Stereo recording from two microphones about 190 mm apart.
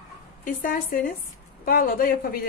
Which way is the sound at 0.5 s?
50° left (ahead or behind).